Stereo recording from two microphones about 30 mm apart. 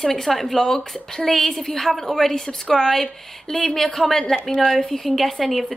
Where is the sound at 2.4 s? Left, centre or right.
Left.